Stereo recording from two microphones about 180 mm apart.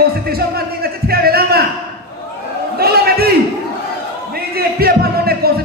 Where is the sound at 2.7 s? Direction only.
60° right (ahead or behind).